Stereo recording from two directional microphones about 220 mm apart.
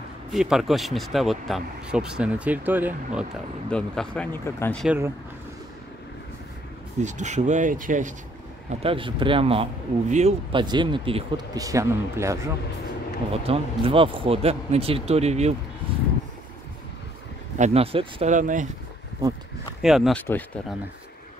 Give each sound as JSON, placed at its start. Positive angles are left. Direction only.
{"t": 0.3, "sound": "speech", "side_deg": 0}
{"t": 3.7, "sound": "speech", "side_deg": 5}
{"t": 4.8, "sound": "speech", "side_deg": -10}
{"t": 7.0, "sound": "speech", "side_deg": -35}
{"t": 8.6, "sound": "speech", "side_deg": -25}
{"t": 13.3, "sound": "speech", "side_deg": -25}
{"t": 17.6, "sound": "speech", "side_deg": -30}
{"t": 19.8, "sound": "speech", "side_deg": 0}